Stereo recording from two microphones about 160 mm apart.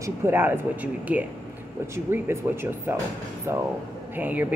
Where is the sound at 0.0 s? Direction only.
15° right (ahead or behind).